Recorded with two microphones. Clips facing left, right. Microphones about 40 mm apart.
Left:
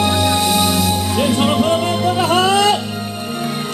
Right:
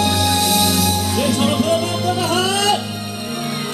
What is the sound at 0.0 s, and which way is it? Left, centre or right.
Music, left.